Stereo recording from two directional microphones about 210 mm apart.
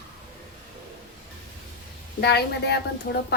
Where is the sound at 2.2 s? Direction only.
50° left (ahead or behind).